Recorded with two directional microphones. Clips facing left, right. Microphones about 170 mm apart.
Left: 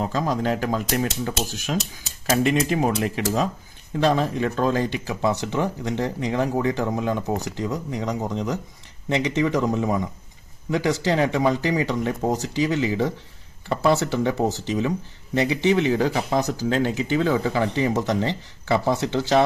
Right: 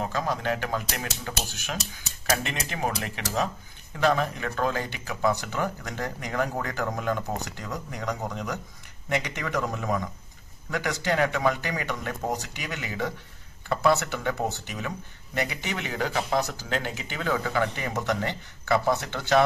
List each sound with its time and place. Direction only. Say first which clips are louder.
0.0 s speech: left 5 dB; 35° left (ahead or behind)